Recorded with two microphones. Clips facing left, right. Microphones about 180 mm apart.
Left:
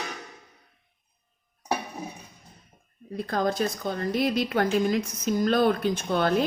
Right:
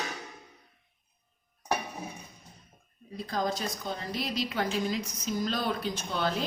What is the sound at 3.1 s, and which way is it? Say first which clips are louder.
A woman's voice: left 5 dB; 60° left (ahead or behind).